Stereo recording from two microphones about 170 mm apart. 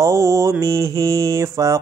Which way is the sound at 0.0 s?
20° right (ahead or behind).